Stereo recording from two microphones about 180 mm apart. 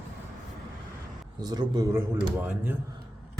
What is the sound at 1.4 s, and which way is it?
Speech, 20° right (ahead or behind).